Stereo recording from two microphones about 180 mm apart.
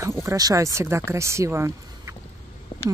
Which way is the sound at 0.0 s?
15° right (ahead or behind).